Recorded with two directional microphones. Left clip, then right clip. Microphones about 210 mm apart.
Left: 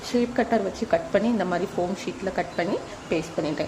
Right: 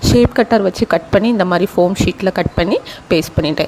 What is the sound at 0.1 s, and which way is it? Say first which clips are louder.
Speech: right 11 dB; 35° right (ahead or behind).